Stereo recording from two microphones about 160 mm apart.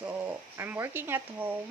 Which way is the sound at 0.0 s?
10° right (ahead or behind).